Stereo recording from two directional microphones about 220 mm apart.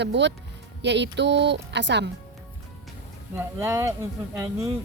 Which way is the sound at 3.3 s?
10° right (ahead or behind).